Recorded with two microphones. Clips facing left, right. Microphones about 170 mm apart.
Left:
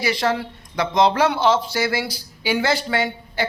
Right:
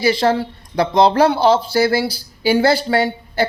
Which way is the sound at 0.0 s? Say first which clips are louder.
Right 6 dB; 30° right (ahead or behind).